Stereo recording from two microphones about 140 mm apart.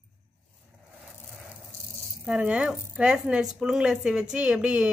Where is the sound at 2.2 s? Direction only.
10° right (ahead or behind).